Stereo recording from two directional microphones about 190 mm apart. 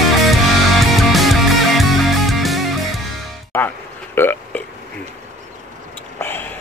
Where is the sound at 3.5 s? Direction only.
10° left (ahead or behind).